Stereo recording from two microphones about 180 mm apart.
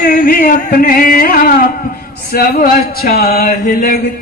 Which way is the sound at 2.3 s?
55° left (ahead or behind).